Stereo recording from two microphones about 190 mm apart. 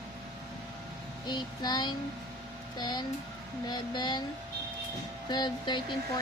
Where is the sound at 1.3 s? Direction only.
20° left (ahead or behind).